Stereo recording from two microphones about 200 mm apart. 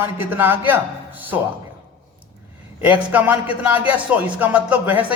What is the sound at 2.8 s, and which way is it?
A woman's voice, 10° right (ahead or behind).